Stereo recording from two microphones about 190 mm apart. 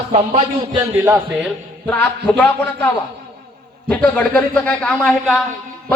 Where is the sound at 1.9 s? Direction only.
5° left (ahead or behind).